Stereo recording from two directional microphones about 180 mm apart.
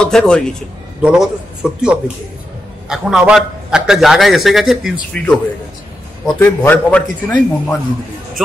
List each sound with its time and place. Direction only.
0.0 s a man's voice: 5° left (ahead or behind)